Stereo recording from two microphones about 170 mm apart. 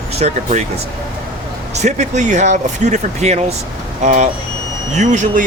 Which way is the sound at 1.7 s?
45° right (ahead or behind).